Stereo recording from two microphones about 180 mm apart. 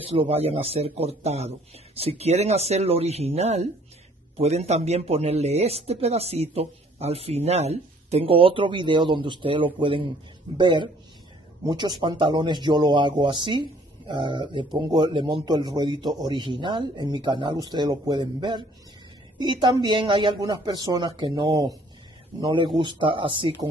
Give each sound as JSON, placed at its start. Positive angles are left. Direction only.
{"t": 0.0, "sound": "speech", "side_deg": -30}